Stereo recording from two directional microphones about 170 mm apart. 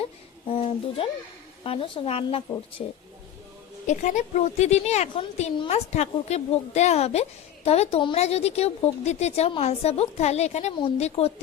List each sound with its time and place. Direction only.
0.0 s a sound: 35° left (ahead or behind)
1.6 s a woman's voice: 30° left (ahead or behind)
3.8 s a woman's voice: 45° left (ahead or behind)